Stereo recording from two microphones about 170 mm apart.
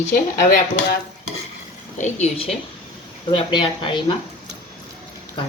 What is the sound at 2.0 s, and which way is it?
Speech, 40° left (ahead or behind).